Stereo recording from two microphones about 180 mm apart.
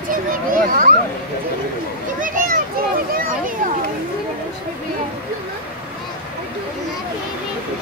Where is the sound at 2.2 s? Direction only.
50° right (ahead or behind).